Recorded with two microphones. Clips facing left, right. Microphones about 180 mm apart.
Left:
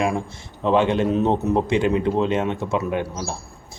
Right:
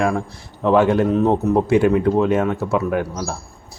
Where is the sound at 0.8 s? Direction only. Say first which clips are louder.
Right 4 dB; 20° left (ahead or behind).